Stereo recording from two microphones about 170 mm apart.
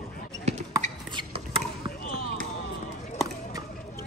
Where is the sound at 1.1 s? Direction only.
30° right (ahead or behind).